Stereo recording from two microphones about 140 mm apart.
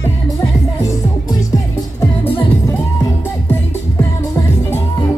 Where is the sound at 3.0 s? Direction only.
25° left (ahead or behind).